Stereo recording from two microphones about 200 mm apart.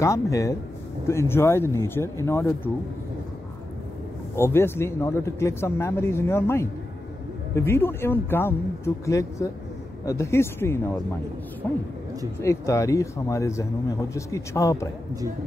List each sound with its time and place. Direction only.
0.0 s speech: 15° left (ahead or behind)
4.4 s speech: 10° left (ahead or behind)
12.4 s speech: 15° left (ahead or behind)